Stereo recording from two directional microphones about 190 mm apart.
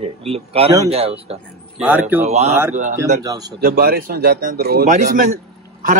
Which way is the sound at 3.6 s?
50° right (ahead or behind).